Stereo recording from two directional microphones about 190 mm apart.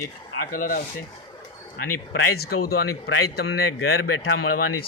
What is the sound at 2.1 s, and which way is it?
Speech, 55° left (ahead or behind).